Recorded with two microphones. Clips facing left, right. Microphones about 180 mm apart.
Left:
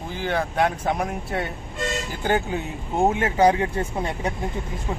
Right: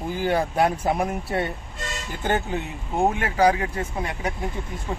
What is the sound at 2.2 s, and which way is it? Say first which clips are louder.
Speech: left 1 dB; 10° left (ahead or behind).